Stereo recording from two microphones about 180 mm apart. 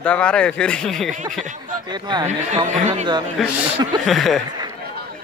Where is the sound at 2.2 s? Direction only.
40° right (ahead or behind).